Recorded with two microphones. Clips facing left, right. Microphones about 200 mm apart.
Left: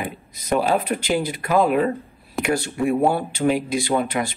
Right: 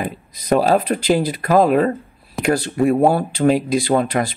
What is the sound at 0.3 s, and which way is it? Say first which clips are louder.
Speech: right 5 dB; 35° right (ahead or behind).